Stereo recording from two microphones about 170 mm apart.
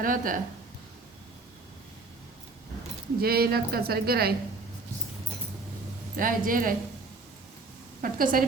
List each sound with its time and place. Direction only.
0.0 s a woman's voice: 55° right (ahead or behind)
3.2 s a woman's voice: 65° right (ahead or behind)
6.1 s a woman's voice: 55° right (ahead or behind)
8.0 s a woman's voice: 55° right (ahead or behind)